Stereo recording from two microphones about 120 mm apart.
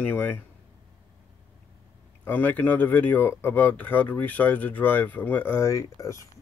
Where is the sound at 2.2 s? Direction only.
15° left (ahead or behind).